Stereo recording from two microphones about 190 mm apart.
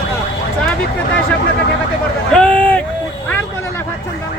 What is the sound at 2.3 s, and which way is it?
Speech, 5° left (ahead or behind).